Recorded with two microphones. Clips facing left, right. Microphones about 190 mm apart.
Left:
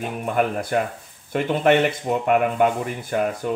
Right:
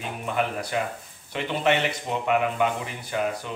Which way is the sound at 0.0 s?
50° left (ahead or behind).